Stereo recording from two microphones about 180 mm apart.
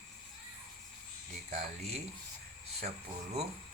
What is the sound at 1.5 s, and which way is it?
Speech, 35° right (ahead or behind).